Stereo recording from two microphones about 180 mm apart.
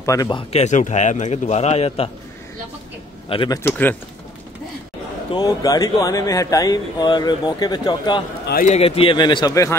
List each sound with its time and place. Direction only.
0.0 s speech: 20° left (ahead or behind); by 2.0 s 35° left (ahead or behind)
3.3 s speech: 25° left (ahead or behind)
5.3 s speech: 20° left (ahead or behind)
8.6 s speech: 35° left (ahead or behind); by 9.8 s 20° left (ahead or behind)